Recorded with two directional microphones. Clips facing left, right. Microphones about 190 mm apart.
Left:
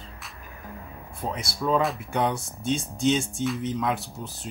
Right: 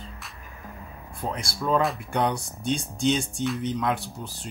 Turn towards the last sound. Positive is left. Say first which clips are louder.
# even
turn(degrees=0)  # may be behind; listen again after turning